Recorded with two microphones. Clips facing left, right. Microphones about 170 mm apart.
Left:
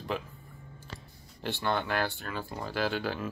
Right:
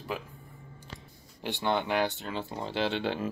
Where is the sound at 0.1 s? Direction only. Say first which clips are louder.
Left 3 dB; 5° right (ahead or behind).